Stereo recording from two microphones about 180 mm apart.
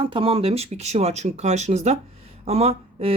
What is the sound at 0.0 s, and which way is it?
Speech, 30° right (ahead or behind).